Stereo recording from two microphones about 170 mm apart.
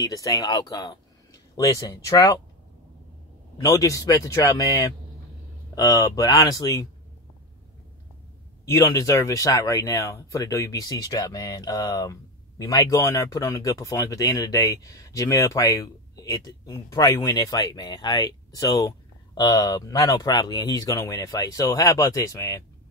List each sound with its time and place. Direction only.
0.0 s speech: 20° left (ahead or behind)
3.6 s speech: 20° left (ahead or behind)
8.6 s speech: 20° left (ahead or behind)